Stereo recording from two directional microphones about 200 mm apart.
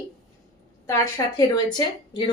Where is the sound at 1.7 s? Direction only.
25° left (ahead or behind).